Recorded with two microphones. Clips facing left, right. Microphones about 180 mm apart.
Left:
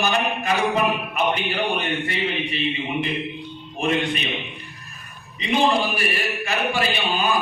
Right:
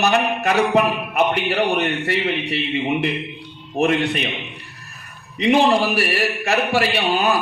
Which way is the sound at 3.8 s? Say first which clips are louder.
Right 6 dB; 75° right (ahead or behind).